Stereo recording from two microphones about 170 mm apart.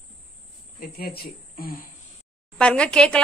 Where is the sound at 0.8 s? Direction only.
60° left (ahead or behind).